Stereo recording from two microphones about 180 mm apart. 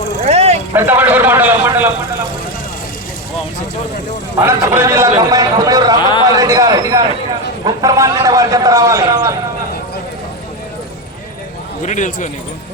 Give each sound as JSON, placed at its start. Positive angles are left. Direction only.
{"t": 0.3, "sound": "vehicle", "side_deg": -35}
{"t": 0.7, "sound": "a man's voice", "side_deg": -10}
{"t": 4.4, "sound": "a man's voice", "side_deg": -15}
{"t": 11.9, "sound": "speech", "side_deg": 45}